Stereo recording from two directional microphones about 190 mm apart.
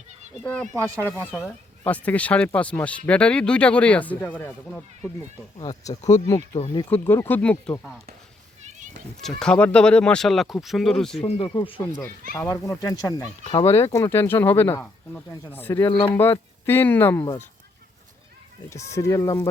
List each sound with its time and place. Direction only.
0.4 s speech: 5° left (ahead or behind)
5.5 s speech: 25° left (ahead or behind)
6.0 s speech: 40° left (ahead or behind)
6.3 s speech: 25° left (ahead or behind)
6.9 s speech: 10° left (ahead or behind)
9.2 s speech: 5° left (ahead or behind)
11.2 s speech: 30° left (ahead or behind)
12.9 s speech: 20° left (ahead or behind)
18.7 s speech: 15° left (ahead or behind)